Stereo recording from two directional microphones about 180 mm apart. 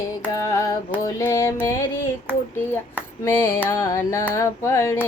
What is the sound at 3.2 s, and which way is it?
Music, 15° left (ahead or behind).